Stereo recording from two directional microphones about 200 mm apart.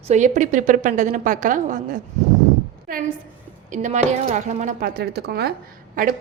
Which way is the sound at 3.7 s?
35° right (ahead or behind).